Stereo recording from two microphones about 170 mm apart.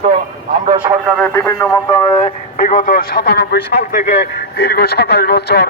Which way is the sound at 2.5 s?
50° left (ahead or behind).